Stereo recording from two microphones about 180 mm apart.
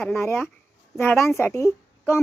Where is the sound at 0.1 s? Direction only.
10° left (ahead or behind).